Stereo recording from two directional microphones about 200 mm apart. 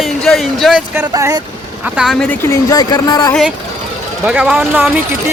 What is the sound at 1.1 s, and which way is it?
Speech, 15° right (ahead or behind).